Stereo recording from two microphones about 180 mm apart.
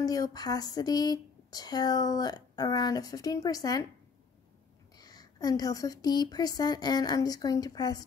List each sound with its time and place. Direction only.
0.0 s speech: 20° left (ahead or behind)
4.9 s speech: 20° left (ahead or behind)